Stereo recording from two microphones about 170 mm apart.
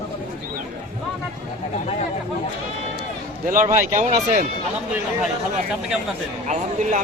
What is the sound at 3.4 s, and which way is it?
Speech, 50° right (ahead or behind).